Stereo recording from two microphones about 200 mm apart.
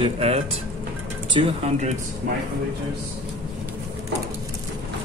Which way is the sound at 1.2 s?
30° right (ahead or behind).